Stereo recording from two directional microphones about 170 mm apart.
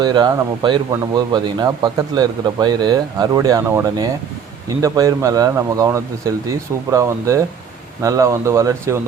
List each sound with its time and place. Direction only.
0.0 s speech: 25° right (ahead or behind)